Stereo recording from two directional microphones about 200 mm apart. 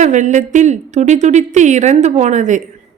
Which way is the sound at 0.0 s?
40° right (ahead or behind).